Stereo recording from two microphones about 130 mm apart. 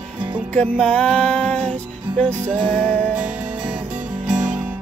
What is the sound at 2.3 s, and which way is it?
Music, 20° right (ahead or behind).